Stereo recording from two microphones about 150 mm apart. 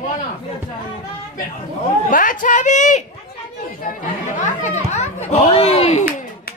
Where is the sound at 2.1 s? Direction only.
65° left (ahead or behind); by 6.0 s 45° left (ahead or behind).